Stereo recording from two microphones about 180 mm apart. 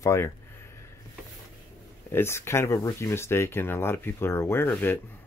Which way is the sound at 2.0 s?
15° left (ahead or behind).